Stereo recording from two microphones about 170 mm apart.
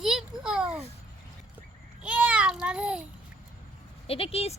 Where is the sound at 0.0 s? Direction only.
5° right (ahead or behind).